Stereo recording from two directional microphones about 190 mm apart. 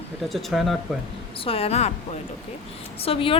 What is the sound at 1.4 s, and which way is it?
Speech, 30° left (ahead or behind).